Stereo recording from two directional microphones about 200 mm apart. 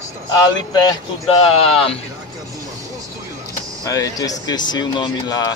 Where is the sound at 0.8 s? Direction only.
30° left (ahead or behind).